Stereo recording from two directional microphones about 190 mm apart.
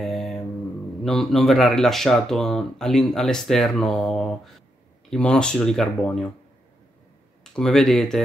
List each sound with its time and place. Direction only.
0.0 s mantra: centre (ahead or behind)
1.0 s speech: centre (ahead or behind)
7.5 s speech: centre (ahead or behind)